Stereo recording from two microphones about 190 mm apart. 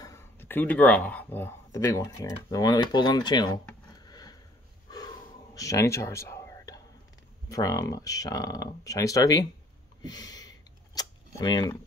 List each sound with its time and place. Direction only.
0.0 s speech: 15° left (ahead or behind)
4.1 s sniff: 20° left (ahead or behind)
4.9 s gasp: 20° left (ahead or behind)
7.4 s speech: 20° left (ahead or behind)
10.0 s a sound: 20° left (ahead or behind)
11.0 s cutlery: 20° left (ahead or behind)